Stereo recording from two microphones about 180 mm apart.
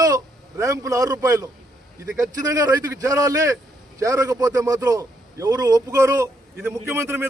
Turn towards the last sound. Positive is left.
turn(degrees=-15)  # may be behind; listen again after turning